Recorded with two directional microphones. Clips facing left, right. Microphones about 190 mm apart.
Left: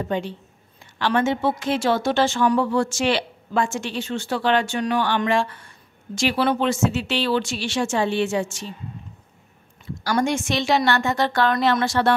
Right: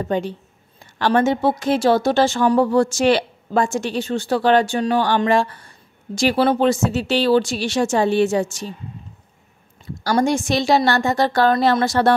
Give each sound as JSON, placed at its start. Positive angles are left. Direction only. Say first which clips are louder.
{"t": 0.1, "sound": "speech", "louder": "right 4 dB", "side_deg": -40}
{"t": 10.0, "sound": "speech", "louder": "right 4 dB", "side_deg": -35}